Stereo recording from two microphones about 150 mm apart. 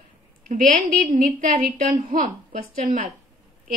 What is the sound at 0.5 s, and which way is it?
A woman's voice, 60° right (ahead or behind).